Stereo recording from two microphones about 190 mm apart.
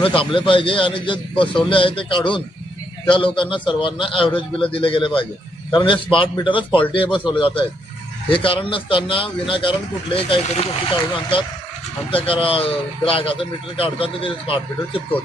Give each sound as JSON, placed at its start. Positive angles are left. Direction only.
{"t": 0.0, "sound": "a man's voice", "side_deg": 25}